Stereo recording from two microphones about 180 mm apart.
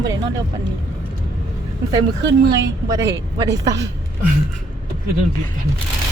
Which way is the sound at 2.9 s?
15° right (ahead or behind).